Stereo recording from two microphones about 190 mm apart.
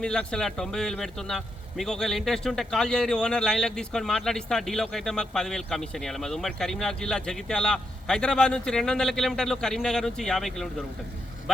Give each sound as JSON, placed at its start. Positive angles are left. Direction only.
{"t": 0.0, "sound": "a man's voice", "side_deg": 5}